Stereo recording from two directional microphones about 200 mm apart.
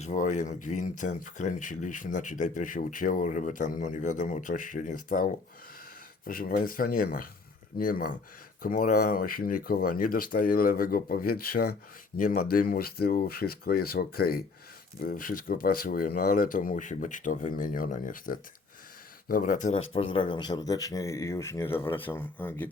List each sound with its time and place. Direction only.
0.0 s speech: 35° left (ahead or behind)
19.9 s speech: 25° left (ahead or behind); by 22.7 s 10° left (ahead or behind)